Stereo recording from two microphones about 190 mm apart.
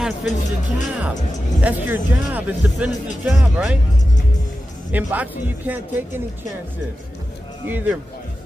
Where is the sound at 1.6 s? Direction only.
10° right (ahead or behind).